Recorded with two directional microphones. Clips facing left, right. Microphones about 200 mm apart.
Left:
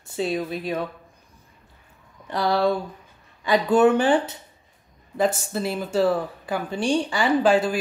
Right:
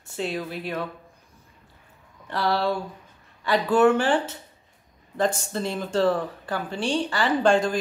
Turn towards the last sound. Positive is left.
turn(degrees=5)  # may be behind; listen again after turning